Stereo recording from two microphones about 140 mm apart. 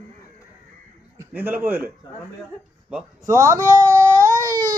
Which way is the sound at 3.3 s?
20° right (ahead or behind).